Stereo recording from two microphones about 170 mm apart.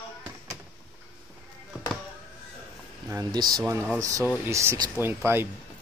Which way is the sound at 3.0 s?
20° right (ahead or behind).